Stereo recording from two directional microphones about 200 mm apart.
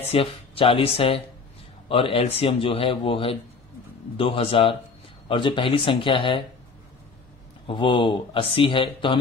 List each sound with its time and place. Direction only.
0.1 s speech: 30° left (ahead or behind)
7.6 s speech: 25° left (ahead or behind)